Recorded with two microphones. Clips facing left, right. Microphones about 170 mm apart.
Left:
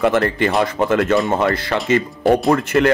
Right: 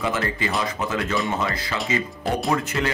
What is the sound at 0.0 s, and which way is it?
Speech, 65° left (ahead or behind).